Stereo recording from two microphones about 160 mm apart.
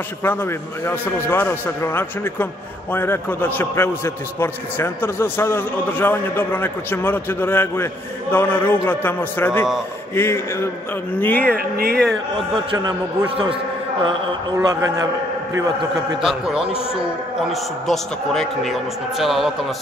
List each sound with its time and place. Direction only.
0.2 s a man's voice: 15° left (ahead or behind)
11.5 s speech: 75° right (ahead or behind)
12.7 s a man's voice: 25° right (ahead or behind)
14.6 s a man's voice: 25° right (ahead or behind)
16.2 s a man's voice: 5° right (ahead or behind)